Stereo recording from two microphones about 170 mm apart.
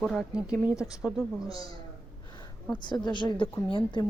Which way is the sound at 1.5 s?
20° left (ahead or behind).